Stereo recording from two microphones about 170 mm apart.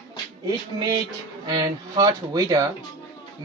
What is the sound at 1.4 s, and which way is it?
Speech, 25° right (ahead or behind).